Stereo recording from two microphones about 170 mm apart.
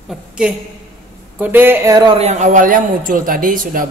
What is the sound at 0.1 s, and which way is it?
A woman's voice, 5° right (ahead or behind).